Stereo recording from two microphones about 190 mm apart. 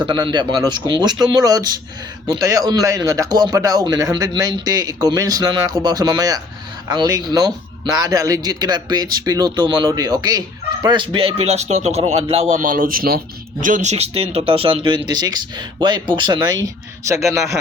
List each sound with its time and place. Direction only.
0.1 s speech: 25° right (ahead or behind)
12.5 s speech: 45° right (ahead or behind); by 16.6 s 25° right (ahead or behind)